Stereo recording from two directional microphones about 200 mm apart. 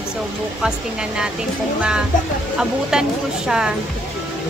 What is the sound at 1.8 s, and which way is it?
Speech, 5° right (ahead or behind).